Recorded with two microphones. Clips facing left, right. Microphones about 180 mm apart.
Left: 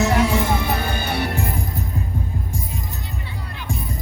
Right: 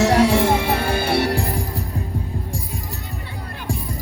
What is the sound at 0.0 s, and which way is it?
Music, 30° right (ahead or behind).